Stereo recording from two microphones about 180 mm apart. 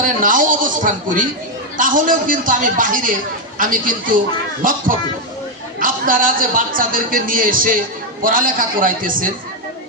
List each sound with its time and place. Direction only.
0.0 s a sound: 50° right (ahead or behind)
1.8 s a man's voice: 50° right (ahead or behind)
5.8 s a man's voice: 50° right (ahead or behind)